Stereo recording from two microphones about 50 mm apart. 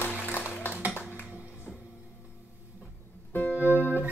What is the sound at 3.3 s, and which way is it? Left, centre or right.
Music, left.